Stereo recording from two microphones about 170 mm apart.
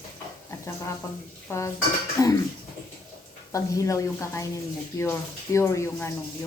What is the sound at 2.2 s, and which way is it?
Speech, 20° left (ahead or behind).